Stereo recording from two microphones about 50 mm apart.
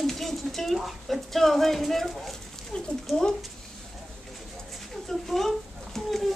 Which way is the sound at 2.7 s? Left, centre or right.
Centre.